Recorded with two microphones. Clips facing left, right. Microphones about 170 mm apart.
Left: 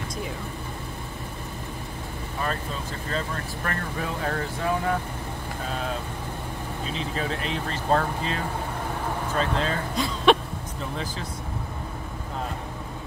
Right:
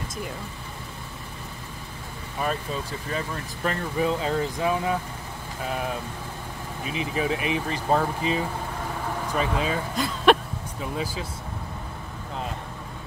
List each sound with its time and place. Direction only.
3.6 s speech: 20° right (ahead or behind)
6.9 s speech: 10° right (ahead or behind)